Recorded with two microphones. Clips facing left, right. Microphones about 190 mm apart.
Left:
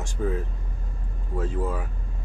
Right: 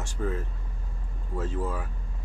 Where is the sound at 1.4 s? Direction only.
10° left (ahead or behind).